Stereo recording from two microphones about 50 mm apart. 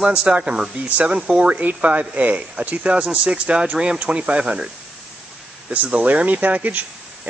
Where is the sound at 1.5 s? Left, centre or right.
Right.